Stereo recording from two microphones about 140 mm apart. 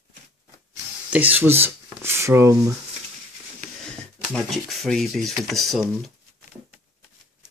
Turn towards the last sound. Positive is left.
turn(degrees=0)  # may be behind; listen again after turning